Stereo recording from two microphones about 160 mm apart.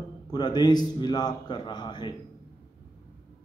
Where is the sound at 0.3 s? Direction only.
25° left (ahead or behind).